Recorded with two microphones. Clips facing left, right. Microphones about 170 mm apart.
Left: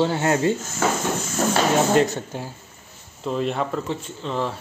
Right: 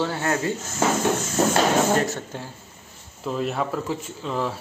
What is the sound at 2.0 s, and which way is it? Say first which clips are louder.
Speech: left 5 dB; 15° left (ahead or behind).